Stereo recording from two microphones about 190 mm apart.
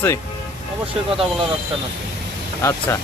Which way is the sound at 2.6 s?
15° left (ahead or behind).